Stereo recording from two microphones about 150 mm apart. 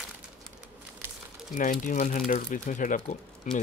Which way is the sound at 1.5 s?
60° left (ahead or behind).